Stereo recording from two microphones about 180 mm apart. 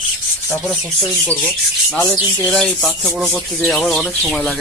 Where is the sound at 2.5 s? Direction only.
Centre (ahead or behind).